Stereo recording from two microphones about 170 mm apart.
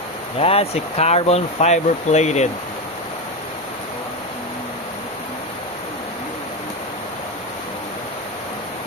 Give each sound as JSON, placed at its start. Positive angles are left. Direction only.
{"t": 0.3, "sound": "speech", "side_deg": 35}